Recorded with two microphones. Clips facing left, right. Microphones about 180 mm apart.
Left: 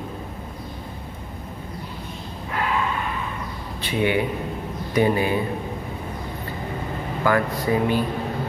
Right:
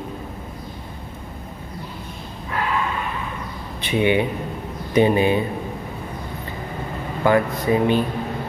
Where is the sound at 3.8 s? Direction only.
20° right (ahead or behind).